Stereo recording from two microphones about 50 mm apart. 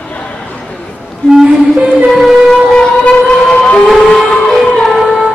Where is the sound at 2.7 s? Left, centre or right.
Centre.